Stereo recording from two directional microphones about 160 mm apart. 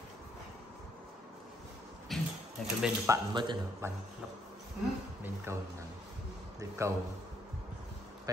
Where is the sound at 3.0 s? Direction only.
30° right (ahead or behind).